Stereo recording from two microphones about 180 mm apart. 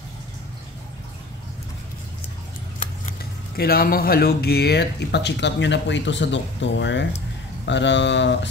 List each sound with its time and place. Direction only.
3.5 s speech: 60° left (ahead or behind); by 8.5 s 80° left